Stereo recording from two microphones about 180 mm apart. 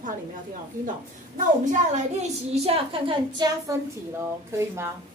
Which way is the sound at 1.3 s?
45° right (ahead or behind).